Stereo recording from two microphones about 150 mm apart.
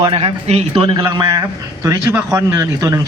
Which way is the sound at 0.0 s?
35° right (ahead or behind).